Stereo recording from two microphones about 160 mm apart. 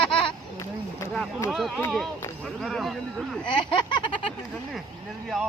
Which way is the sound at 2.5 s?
Centre (ahead or behind).